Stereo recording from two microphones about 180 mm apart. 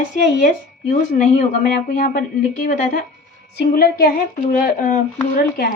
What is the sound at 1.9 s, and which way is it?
Speech, 50° left (ahead or behind).